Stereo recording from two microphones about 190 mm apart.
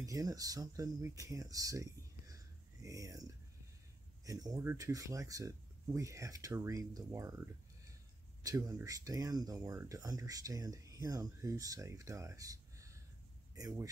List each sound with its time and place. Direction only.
0.0 s speech: 20° right (ahead or behind)